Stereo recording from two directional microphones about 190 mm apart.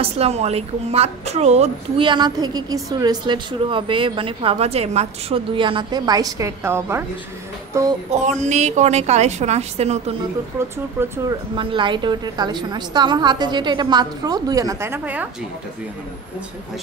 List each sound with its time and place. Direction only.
0.0 s a woman's voice: 35° right (ahead or behind); by 7.1 s 15° right (ahead or behind)
7.7 s music: 15° right (ahead or behind)
8.1 s a woman's voice: 40° right (ahead or behind)
11.0 s a woman's voice: 20° right (ahead or behind)